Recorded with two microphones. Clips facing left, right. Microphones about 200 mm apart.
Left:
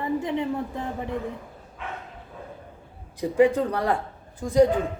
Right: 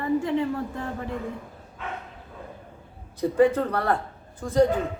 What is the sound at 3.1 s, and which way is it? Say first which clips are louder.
Speech: even; 10° left (ahead or behind).